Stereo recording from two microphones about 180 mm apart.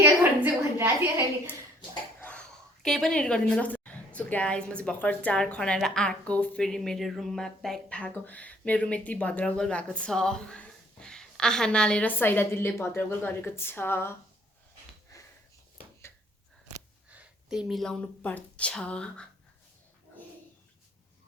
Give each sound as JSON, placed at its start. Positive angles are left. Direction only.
{"t": 0.0, "sound": "a sound", "side_deg": -10}
{"t": 2.1, "sound": "a woman's voice", "side_deg": 5}
{"t": 15.1, "sound": "sniff", "side_deg": 20}
{"t": 17.1, "sound": "speech", "side_deg": -5}